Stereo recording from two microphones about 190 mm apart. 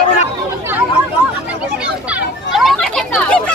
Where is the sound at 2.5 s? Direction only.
Centre (ahead or behind).